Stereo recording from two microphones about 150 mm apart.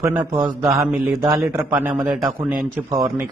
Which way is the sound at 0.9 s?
15° right (ahead or behind).